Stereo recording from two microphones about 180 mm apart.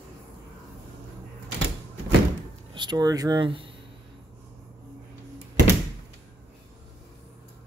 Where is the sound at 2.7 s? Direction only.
25° right (ahead or behind).